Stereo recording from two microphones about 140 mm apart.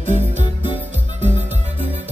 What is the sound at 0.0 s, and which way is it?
Music, 55° right (ahead or behind).